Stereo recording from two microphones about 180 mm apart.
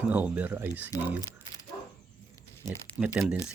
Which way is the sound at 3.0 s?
5° right (ahead or behind).